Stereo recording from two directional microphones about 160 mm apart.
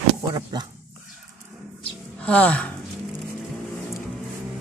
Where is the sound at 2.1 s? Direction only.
5° left (ahead or behind).